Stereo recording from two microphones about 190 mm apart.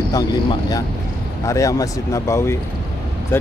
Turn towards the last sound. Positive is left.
turn(degrees=15)  # may be behind; listen again after turning